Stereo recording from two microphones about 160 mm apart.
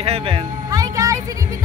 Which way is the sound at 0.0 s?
40° right (ahead or behind).